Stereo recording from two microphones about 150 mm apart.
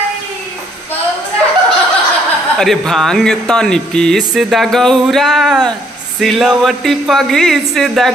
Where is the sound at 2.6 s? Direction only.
Centre (ahead or behind).